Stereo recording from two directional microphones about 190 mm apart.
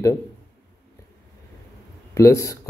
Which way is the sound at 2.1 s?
15° left (ahead or behind).